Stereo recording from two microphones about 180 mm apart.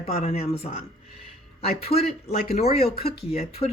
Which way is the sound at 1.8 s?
35° left (ahead or behind).